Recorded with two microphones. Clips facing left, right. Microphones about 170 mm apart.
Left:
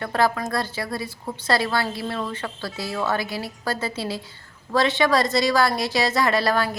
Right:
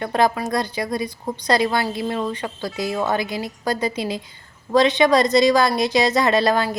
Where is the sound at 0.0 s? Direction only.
20° right (ahead or behind).